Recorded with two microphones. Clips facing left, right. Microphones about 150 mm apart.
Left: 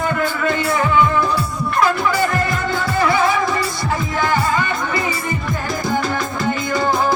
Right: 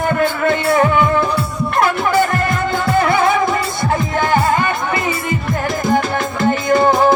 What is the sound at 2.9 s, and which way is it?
Music, 55° right (ahead or behind).